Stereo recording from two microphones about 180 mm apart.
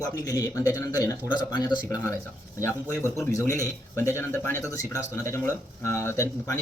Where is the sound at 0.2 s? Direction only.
20° left (ahead or behind).